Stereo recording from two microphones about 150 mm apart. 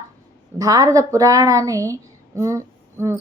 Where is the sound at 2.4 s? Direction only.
20° right (ahead or behind).